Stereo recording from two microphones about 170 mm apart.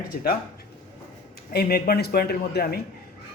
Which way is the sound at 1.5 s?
65° left (ahead or behind).